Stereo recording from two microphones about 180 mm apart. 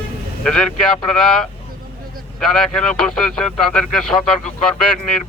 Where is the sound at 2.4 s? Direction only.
5° left (ahead or behind).